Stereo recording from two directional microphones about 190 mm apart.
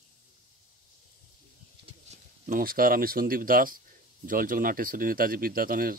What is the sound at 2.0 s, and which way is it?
Speech, 40° right (ahead or behind).